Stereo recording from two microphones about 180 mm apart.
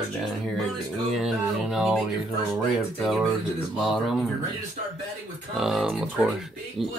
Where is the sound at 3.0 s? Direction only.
Centre (ahead or behind).